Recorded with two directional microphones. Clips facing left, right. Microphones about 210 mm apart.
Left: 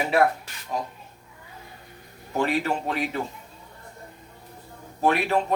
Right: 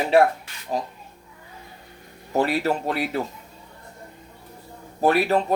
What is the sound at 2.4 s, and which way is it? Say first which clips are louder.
Speech: right 3 dB; 35° right (ahead or behind).